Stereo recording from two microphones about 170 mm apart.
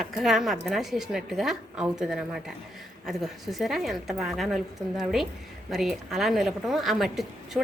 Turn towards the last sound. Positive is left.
turn(degrees=0)  # may be behind; listen again after turning